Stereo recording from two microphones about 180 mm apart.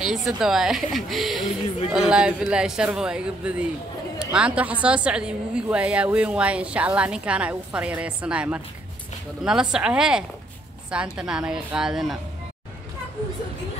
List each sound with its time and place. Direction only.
0.0 s a woman's voice: centre (ahead or behind)